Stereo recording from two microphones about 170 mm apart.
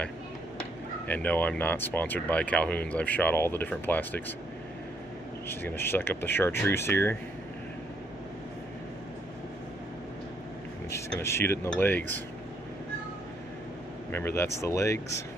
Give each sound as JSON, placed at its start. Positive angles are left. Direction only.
{"t": 1.0, "sound": "speech", "side_deg": 10}
{"t": 5.5, "sound": "speech", "side_deg": 10}
{"t": 11.1, "sound": "speech", "side_deg": 15}
{"t": 14.1, "sound": "speech", "side_deg": 15}